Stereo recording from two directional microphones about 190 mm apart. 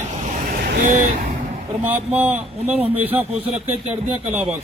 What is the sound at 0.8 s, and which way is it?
Speech, 50° right (ahead or behind).